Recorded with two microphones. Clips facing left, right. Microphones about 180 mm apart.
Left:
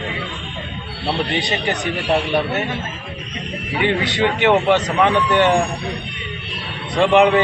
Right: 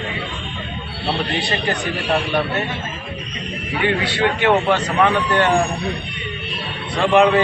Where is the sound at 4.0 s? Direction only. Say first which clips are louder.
Left 1 dB; 20° left (ahead or behind).